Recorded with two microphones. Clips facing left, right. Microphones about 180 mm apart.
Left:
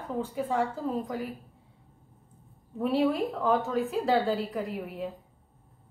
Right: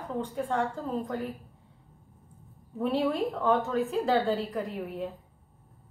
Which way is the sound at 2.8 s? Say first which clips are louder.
Left 1 dB; centre (ahead or behind).